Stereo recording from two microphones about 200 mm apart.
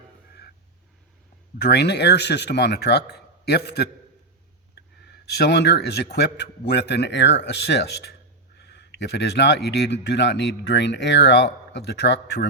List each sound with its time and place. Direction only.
1.6 s speech: 55° left (ahead or behind)
5.1 s speech: 55° left (ahead or behind)